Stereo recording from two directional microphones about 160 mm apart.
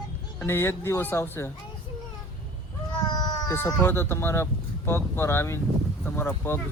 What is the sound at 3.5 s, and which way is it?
Speech, 15° left (ahead or behind).